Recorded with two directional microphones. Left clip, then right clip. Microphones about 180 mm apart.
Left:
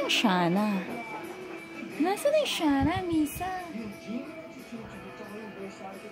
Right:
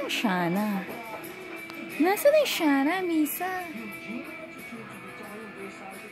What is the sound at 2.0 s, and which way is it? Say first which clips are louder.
A woman's voice: right 4 dB; 30° right (ahead or behind).